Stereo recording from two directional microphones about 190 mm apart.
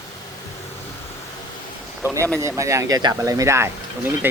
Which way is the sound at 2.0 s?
15° right (ahead or behind).